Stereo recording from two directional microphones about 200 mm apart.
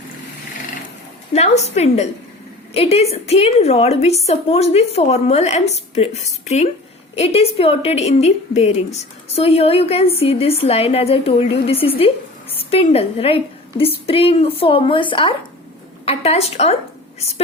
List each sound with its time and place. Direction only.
1.3 s a woman's voice: 35° left (ahead or behind)